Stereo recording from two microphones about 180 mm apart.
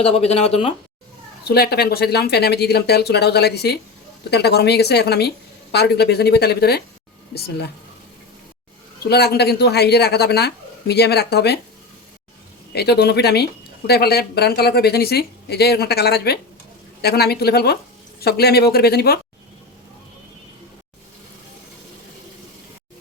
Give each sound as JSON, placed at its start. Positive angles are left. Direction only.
{"t": 0.0, "sound": "speech", "side_deg": 35}
{"t": 1.5, "sound": "speech", "side_deg": 60}
{"t": 9.0, "sound": "speech", "side_deg": 65}
{"t": 12.7, "sound": "speech", "side_deg": 65}